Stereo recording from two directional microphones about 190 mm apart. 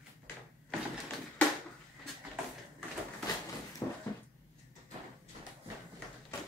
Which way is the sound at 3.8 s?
15° left (ahead or behind).